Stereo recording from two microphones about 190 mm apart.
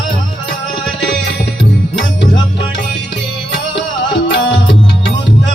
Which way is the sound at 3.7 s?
25° left (ahead or behind).